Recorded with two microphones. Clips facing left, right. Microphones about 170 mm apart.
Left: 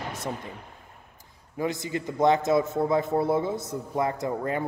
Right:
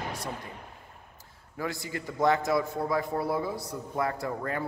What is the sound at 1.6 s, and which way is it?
A man's voice, 20° left (ahead or behind).